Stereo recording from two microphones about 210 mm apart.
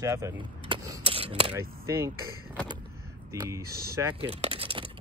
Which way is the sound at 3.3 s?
15° right (ahead or behind).